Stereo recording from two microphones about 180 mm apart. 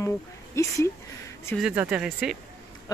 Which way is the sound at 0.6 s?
15° left (ahead or behind).